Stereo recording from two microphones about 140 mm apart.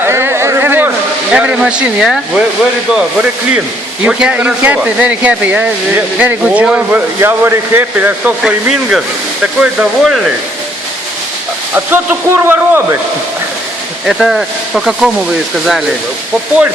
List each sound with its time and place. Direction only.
0.0 s a sound: 15° right (ahead or behind)
1.3 s speech: 10° right (ahead or behind)
11.9 s speech: 15° right (ahead or behind)
14.1 s speech: centre (ahead or behind)